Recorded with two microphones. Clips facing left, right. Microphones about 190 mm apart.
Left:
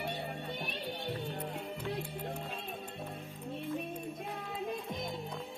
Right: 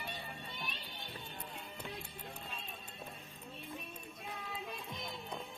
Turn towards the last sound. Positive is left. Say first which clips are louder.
# left 7 dB
turn(degrees=45)  # may be behind; listen again after turning